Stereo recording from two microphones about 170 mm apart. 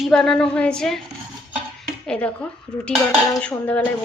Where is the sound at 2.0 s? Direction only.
5° left (ahead or behind).